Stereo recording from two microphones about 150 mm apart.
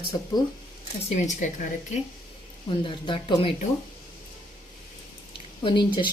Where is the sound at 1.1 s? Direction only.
55° left (ahead or behind).